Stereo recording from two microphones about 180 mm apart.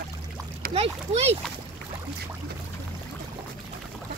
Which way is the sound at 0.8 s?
35° right (ahead or behind).